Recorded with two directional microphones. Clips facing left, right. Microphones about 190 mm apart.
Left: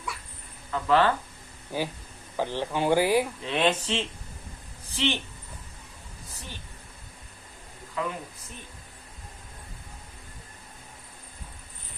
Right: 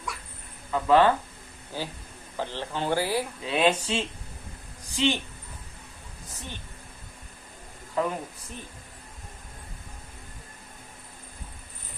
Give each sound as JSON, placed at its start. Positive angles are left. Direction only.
{"t": 0.7, "sound": "speech", "side_deg": -15}
{"t": 1.7, "sound": "speech", "side_deg": 15}
{"t": 3.4, "sound": "speech", "side_deg": -10}
{"t": 8.0, "sound": "speech", "side_deg": -40}